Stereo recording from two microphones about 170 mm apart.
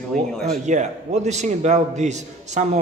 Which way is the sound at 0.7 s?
45° right (ahead or behind).